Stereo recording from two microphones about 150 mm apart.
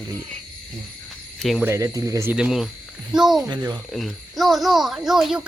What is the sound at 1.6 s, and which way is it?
Speech, 20° right (ahead or behind).